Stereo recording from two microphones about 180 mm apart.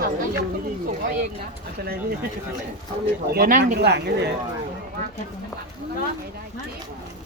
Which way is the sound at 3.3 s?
50° right (ahead or behind).